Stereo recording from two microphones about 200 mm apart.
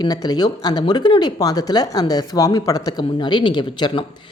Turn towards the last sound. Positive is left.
turn(degrees=25)  # may be behind; listen again after turning